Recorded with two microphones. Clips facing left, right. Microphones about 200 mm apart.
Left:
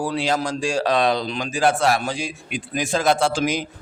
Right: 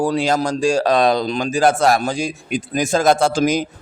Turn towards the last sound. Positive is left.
turn(degrees=-45)  # may be behind; listen again after turning